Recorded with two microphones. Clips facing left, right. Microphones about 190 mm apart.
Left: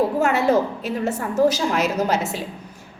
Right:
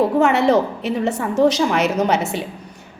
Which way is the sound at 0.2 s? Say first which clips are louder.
Right 4 dB; 75° right (ahead or behind).